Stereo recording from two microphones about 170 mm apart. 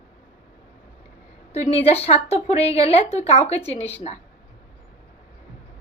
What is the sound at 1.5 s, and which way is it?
A woman's voice, 40° left (ahead or behind).